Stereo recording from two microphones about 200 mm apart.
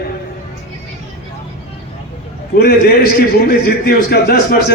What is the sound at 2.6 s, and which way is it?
A man's voice, 50° left (ahead or behind).